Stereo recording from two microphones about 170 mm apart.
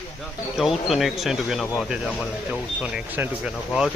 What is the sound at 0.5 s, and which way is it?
Speech, centre (ahead or behind).